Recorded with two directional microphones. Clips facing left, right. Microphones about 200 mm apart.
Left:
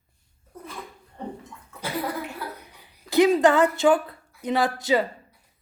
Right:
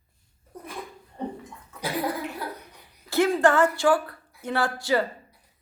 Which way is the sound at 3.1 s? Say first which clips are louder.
Left 3 dB; 15° left (ahead or behind).